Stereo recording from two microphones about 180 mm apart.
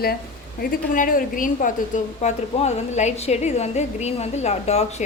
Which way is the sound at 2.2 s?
40° left (ahead or behind).